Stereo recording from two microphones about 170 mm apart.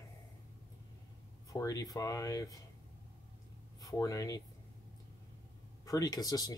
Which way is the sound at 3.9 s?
20° left (ahead or behind).